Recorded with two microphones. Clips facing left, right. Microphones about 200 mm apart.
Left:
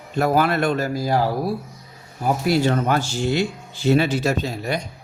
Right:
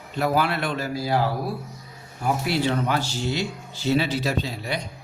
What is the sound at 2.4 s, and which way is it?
Speech, 45° left (ahead or behind).